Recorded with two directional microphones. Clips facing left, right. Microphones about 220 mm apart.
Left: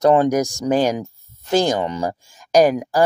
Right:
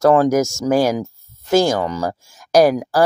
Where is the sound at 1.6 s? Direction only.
20° left (ahead or behind).